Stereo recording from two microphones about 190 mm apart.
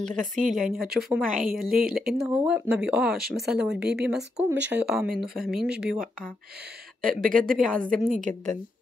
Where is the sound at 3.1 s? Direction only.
55° right (ahead or behind).